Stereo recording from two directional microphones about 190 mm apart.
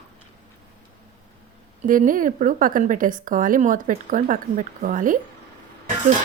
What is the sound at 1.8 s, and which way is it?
A woman's voice, 45° right (ahead or behind).